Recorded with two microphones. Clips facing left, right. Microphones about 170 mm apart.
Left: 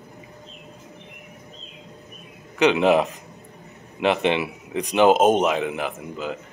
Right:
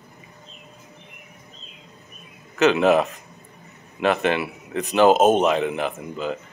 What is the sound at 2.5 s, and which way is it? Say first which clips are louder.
A man's voice: right 1 dB; 15° left (ahead or behind).